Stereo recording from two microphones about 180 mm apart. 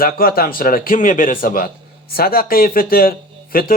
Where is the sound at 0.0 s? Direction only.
55° left (ahead or behind).